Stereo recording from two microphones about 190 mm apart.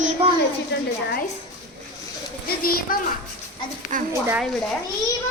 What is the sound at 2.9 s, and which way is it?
Speech, 45° left (ahead or behind).